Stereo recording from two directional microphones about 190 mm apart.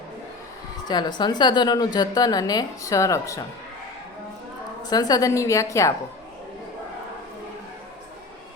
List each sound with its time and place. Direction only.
0.9 s a woman's voice: 20° left (ahead or behind)
4.8 s a woman's voice: 20° left (ahead or behind)